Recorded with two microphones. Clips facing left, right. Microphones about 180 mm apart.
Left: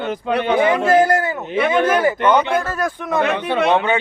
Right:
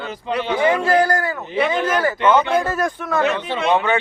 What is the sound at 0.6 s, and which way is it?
Speech, 20° left (ahead or behind).